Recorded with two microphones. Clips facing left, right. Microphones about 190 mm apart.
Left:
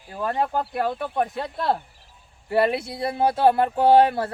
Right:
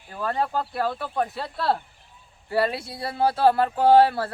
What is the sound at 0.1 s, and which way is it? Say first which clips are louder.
Speech: left 1 dB; 20° left (ahead or behind).